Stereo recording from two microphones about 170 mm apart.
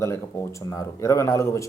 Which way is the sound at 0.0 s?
15° left (ahead or behind).